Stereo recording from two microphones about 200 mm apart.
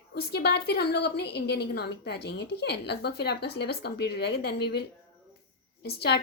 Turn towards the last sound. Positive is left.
turn(degrees=55)  # may be behind; listen again after turning